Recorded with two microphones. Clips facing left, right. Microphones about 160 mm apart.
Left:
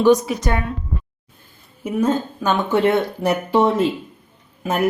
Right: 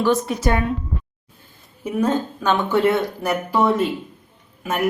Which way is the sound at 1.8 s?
10° left (ahead or behind).